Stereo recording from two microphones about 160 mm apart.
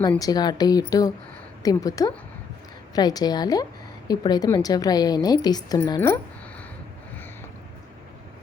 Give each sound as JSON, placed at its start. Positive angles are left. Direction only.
{"t": 0.2, "sound": "a woman's voice", "side_deg": 25}